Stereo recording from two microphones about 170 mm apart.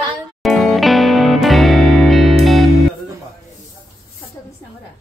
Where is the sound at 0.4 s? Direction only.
Centre (ahead or behind).